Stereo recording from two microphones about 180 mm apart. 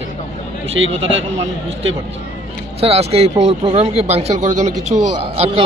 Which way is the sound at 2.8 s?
35° right (ahead or behind).